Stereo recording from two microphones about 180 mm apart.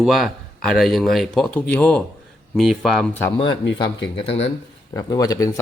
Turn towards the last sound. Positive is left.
turn(degrees=20)  # may be behind; listen again after turning